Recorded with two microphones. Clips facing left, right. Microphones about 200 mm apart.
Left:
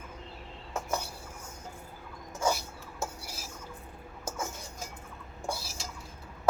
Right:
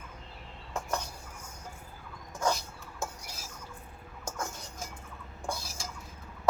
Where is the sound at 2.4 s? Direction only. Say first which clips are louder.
Left 1 dB; 10° left (ahead or behind).